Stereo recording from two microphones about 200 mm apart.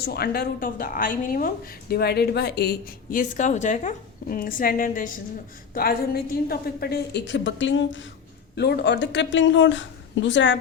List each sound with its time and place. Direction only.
0.0 s a woman's voice: 50° left (ahead or behind)
8.5 s speech: 55° left (ahead or behind)